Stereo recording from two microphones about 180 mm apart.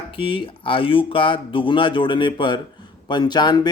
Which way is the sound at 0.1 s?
30° left (ahead or behind).